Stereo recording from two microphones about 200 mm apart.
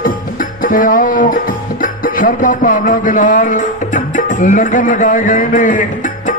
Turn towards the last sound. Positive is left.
turn(degrees=40)  # may be behind; listen again after turning